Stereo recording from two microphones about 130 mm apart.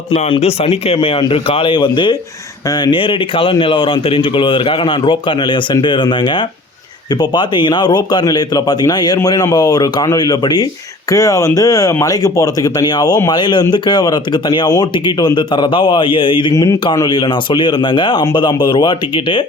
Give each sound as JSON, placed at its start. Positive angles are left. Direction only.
{"t": 0.1, "sound": "speech", "side_deg": 55}